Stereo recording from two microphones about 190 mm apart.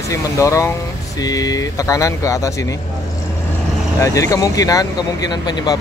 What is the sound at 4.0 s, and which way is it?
Speech, 15° left (ahead or behind).